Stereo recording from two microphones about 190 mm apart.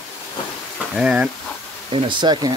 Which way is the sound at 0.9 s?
5° right (ahead or behind).